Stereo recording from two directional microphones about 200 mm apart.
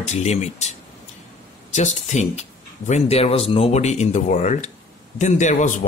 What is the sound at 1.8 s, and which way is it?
Speech, 35° left (ahead or behind).